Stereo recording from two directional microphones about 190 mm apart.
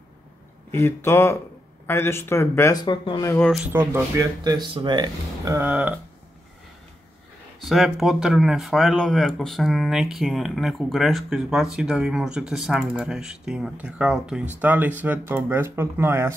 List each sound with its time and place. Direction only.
0.7 s speech: 10° left (ahead or behind)
3.3 s speech: 10° left (ahead or behind)
3.5 s speech: 10° right (ahead or behind)
7.6 s speech: centre (ahead or behind)